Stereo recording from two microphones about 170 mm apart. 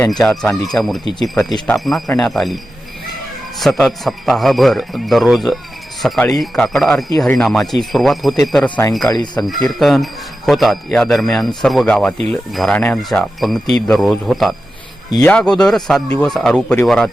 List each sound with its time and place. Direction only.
0.0 s speech: 5° left (ahead or behind)
3.6 s speech: centre (ahead or behind)
9.0 s speech: 25° left (ahead or behind)
9.6 s speech: centre (ahead or behind)